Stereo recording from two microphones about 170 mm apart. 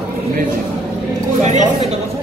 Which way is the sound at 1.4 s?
40° right (ahead or behind).